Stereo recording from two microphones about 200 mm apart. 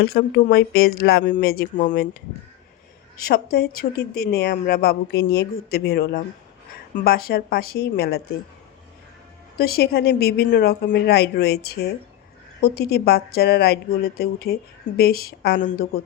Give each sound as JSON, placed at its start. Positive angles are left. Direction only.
{"t": 0.0, "sound": "speech", "side_deg": 50}
{"t": 3.2, "sound": "speech", "side_deg": 50}
{"t": 9.6, "sound": "speech", "side_deg": 50}